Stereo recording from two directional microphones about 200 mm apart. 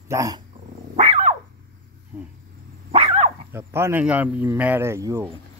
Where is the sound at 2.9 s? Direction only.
30° right (ahead or behind).